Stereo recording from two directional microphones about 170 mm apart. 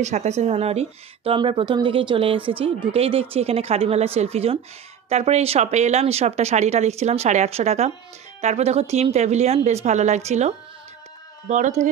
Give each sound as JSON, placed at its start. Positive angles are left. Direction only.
{"t": 0.0, "sound": "speech", "side_deg": -40}